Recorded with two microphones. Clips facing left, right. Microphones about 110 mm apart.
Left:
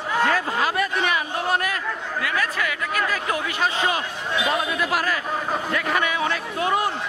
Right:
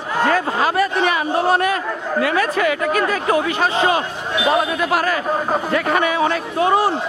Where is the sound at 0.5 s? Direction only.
35° right (ahead or behind).